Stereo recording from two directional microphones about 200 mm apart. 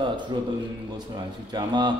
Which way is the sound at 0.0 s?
20° right (ahead or behind).